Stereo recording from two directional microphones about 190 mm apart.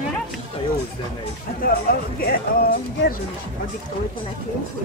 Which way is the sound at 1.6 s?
50° left (ahead or behind).